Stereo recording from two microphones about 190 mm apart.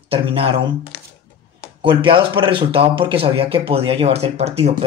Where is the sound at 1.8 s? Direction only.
25° right (ahead or behind).